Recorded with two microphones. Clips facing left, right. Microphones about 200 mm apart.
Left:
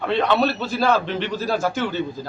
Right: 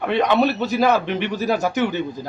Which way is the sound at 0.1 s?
15° right (ahead or behind).